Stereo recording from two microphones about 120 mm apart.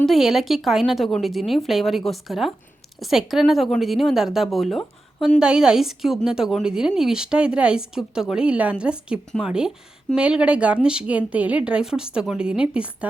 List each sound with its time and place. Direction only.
0.0 s a woman's voice: centre (ahead or behind)